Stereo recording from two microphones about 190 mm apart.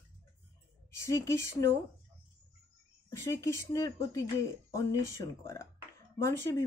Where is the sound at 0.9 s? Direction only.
15° left (ahead or behind).